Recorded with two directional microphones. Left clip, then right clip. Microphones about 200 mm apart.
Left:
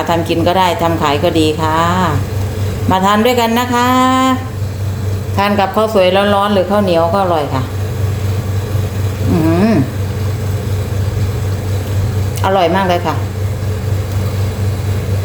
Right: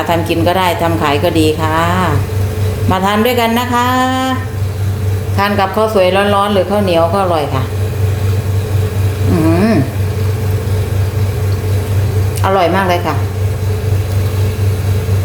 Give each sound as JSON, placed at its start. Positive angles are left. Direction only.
{"t": 0.1, "sound": "a woman's voice", "side_deg": 5}
{"t": 5.4, "sound": "speech", "side_deg": 10}
{"t": 12.4, "sound": "speech", "side_deg": 10}